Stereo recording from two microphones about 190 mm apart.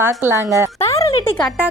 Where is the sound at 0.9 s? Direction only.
15° left (ahead or behind).